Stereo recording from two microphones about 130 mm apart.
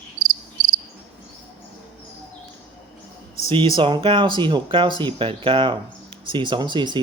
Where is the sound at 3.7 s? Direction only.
40° right (ahead or behind).